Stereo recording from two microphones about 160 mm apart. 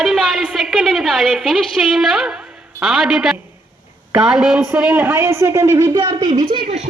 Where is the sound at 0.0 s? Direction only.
Centre (ahead or behind); by 6.4 s 25° right (ahead or behind).